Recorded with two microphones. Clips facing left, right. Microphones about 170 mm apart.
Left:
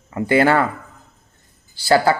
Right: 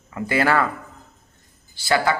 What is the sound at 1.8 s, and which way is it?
Speech, 35° left (ahead or behind).